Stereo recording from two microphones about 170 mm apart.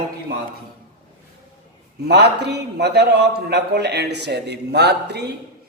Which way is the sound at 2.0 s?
80° right.